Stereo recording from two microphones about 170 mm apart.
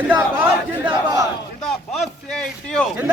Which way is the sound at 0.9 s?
20° right (ahead or behind).